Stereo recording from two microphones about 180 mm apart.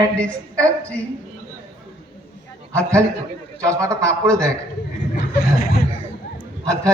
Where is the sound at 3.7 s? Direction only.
15° right (ahead or behind).